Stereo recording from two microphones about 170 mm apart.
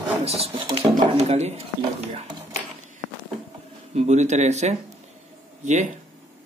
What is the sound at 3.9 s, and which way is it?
Speech, 40° right (ahead or behind).